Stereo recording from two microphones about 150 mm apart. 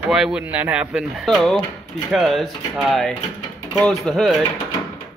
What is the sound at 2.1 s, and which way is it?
Speech, centre (ahead or behind).